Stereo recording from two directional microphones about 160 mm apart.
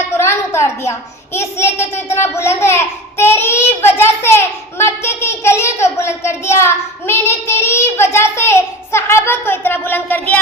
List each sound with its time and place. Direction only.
0.2 s a child's voice: 15° left (ahead or behind)